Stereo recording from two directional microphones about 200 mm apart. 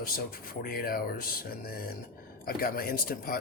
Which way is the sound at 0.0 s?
45° left (ahead or behind).